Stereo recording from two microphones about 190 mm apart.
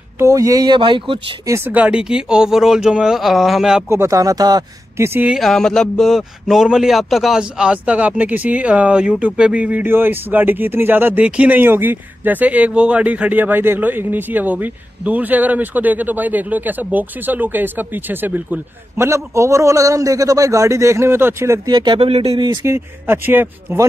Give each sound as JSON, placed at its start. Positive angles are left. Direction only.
{"t": 0.2, "sound": "speech", "side_deg": -15}
{"t": 1.5, "sound": "speech", "side_deg": -10}
{"t": 3.9, "sound": "speech", "side_deg": -15}
{"t": 23.0, "sound": "speech", "side_deg": -10}